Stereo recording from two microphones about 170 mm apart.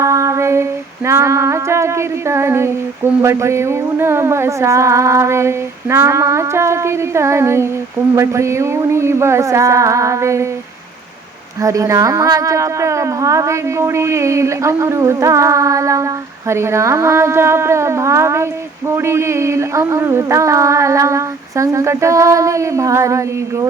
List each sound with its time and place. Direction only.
0.0 s female singing: 20° right (ahead or behind)
11.6 s female singing: 20° right (ahead or behind)